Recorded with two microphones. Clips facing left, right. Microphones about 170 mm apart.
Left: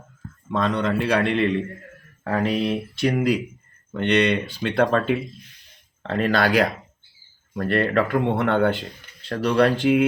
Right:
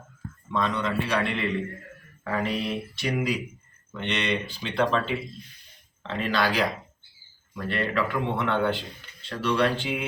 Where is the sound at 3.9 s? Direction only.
65° left (ahead or behind).